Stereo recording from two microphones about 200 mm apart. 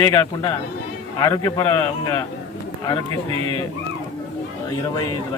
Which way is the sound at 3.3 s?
25° right (ahead or behind).